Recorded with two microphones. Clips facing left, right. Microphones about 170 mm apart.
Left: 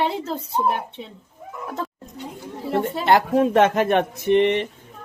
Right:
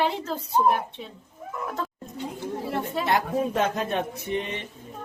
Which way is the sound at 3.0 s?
80° left.